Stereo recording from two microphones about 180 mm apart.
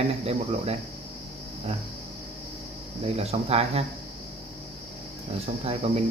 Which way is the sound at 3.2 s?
35° right (ahead or behind).